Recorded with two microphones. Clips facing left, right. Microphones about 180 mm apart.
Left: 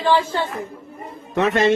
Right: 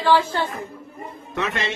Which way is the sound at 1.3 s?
40° left (ahead or behind).